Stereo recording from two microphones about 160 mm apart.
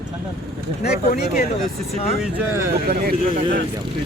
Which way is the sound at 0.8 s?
60° left (ahead or behind).